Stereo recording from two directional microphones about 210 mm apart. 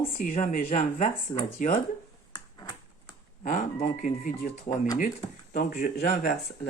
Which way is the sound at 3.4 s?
40° left (ahead or behind).